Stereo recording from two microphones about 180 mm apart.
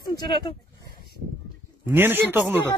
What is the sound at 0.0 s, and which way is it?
Speech, 20° left (ahead or behind).